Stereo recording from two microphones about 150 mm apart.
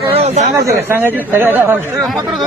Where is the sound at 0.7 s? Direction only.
15° right (ahead or behind).